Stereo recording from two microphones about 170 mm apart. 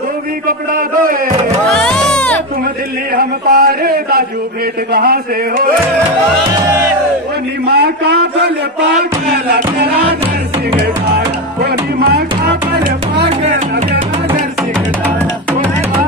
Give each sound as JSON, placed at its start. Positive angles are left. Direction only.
{"t": 0.5, "sound": "a sound", "side_deg": -55}
{"t": 1.7, "sound": "music", "side_deg": 5}
{"t": 3.2, "sound": "a sound", "side_deg": -65}
{"t": 7.6, "sound": "a man's voice", "side_deg": -75}
{"t": 11.1, "sound": "music", "side_deg": -70}
{"t": 13.4, "sound": "speech", "side_deg": -40}